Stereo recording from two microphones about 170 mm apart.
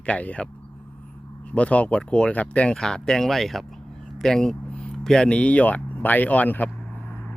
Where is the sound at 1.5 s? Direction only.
10° left (ahead or behind).